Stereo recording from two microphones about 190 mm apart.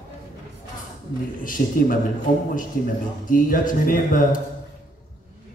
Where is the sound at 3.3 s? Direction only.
45° left (ahead or behind).